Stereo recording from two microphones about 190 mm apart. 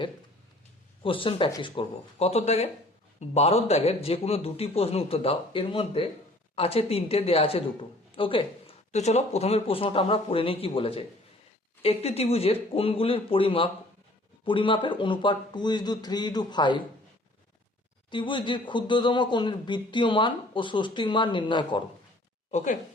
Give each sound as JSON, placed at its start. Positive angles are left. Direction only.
{"t": 1.0, "sound": "a man's voice", "side_deg": 25}
{"t": 18.1, "sound": "speech", "side_deg": 25}
{"t": 22.5, "sound": "a man's voice", "side_deg": 40}